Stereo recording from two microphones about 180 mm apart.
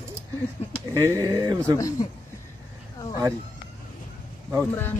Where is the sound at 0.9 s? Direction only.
15° right (ahead or behind).